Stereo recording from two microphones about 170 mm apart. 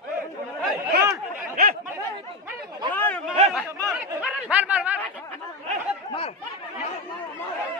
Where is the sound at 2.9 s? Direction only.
10° left (ahead or behind).